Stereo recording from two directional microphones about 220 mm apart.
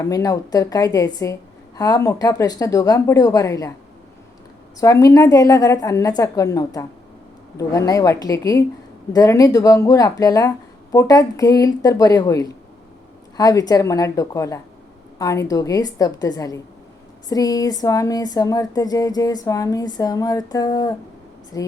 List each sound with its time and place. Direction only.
0.0 s speech: 15° left (ahead or behind)
4.8 s speech: 15° left (ahead or behind)